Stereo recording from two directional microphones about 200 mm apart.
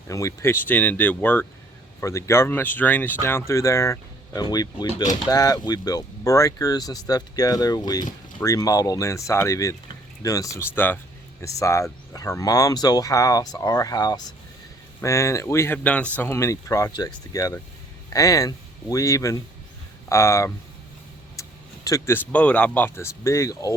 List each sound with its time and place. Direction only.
0.1 s speech: 15° left (ahead or behind)
21.4 s tick-tock: 15° left (ahead or behind)
21.8 s speech: 15° left (ahead or behind)